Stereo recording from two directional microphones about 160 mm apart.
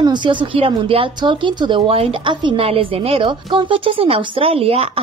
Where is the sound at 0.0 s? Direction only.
30° right (ahead or behind).